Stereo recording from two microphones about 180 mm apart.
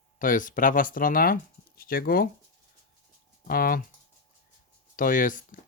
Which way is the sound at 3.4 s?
55° left (ahead or behind).